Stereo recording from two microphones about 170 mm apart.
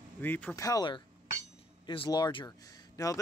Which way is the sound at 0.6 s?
20° left (ahead or behind).